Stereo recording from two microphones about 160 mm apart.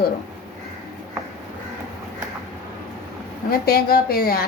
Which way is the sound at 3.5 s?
70° left (ahead or behind).